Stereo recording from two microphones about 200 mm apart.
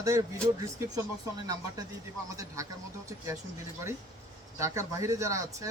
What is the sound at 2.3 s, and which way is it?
Speech, 15° right (ahead or behind).